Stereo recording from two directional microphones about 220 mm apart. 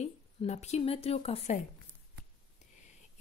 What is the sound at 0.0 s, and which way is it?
Speech, 30° left (ahead or behind).